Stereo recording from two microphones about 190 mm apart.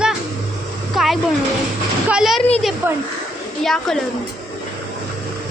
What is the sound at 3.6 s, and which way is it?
Speech, centre (ahead or behind).